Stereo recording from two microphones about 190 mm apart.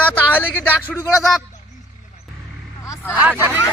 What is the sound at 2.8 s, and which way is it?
Vehicle, 15° left (ahead or behind).